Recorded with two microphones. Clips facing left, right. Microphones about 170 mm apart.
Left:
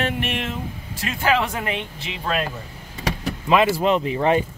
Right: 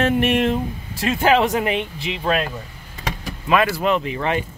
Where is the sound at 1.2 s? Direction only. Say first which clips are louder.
Right 4 dB; 20° right (ahead or behind).